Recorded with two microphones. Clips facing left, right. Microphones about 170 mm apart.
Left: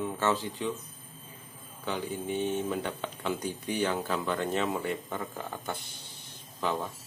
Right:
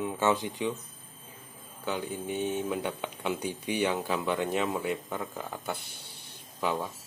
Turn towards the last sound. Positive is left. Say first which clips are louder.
# right 1 dB
turn(degrees=-10)  # may be behind; listen again after turning